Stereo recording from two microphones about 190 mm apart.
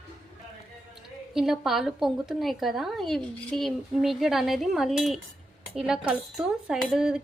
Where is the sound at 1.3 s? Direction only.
Centre (ahead or behind).